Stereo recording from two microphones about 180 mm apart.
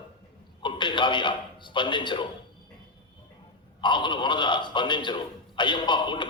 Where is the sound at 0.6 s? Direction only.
25° left (ahead or behind).